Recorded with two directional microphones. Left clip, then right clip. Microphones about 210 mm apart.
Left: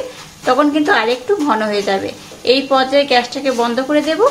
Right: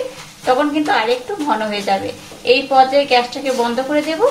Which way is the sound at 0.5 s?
30° left (ahead or behind).